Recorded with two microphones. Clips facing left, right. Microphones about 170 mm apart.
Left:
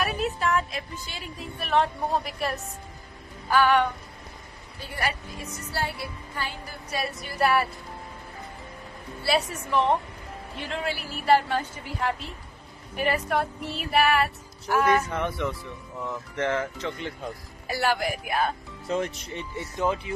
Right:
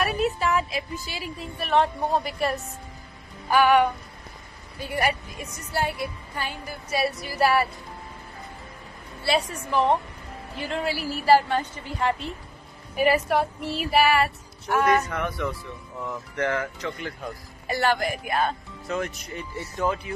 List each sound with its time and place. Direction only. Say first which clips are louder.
0.0 s a woman's voice: right 3 dB; centre (ahead or behind)
3.4 s a woman's voice: right 3 dB; 15° right (ahead or behind)
9.2 s a woman's voice: right 1 dB; centre (ahead or behind)
15.0 s speech: even; 25° left (ahead or behind)
17.6 s a woman's voice: right 2 dB; 5° left (ahead or behind)
18.9 s speech: left 1 dB; 30° left (ahead or behind)
19.5 s speech: even; 20° left (ahead or behind)